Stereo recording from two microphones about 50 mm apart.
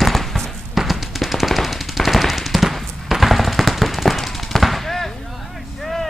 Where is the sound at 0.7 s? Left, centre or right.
Centre.